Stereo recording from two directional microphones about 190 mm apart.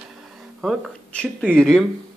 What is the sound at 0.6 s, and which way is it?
Speech, centre (ahead or behind).